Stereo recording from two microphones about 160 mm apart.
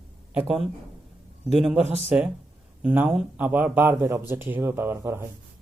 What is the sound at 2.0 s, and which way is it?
A man's voice, 5° right (ahead or behind).